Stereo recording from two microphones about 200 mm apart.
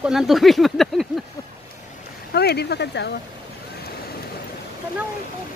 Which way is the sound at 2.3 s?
55° left (ahead or behind).